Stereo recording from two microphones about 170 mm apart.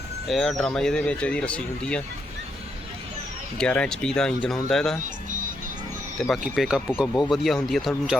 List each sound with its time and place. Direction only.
0.3 s speech: centre (ahead or behind)
3.6 s speech: 5° left (ahead or behind)
6.1 s speech: centre (ahead or behind)